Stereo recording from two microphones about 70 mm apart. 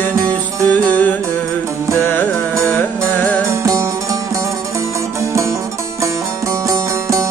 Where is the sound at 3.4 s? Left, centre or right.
Right.